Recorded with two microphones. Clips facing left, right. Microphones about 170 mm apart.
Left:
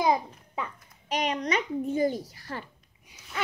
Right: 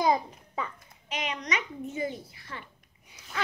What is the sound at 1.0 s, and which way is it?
A child's voice, 35° left (ahead or behind).